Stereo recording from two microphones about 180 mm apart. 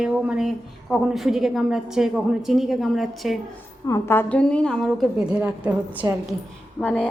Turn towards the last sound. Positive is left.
turn(degrees=5)  # may be behind; listen again after turning